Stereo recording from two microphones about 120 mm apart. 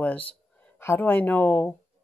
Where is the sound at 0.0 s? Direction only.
10° left (ahead or behind).